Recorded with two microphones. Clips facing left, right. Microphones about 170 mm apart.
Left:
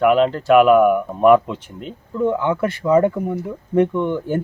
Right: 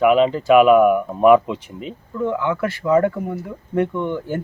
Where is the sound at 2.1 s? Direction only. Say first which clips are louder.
Left 3 dB; 20° left (ahead or behind).